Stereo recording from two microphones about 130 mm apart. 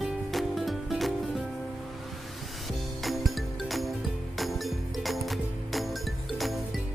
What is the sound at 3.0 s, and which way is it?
Music, centre (ahead or behind).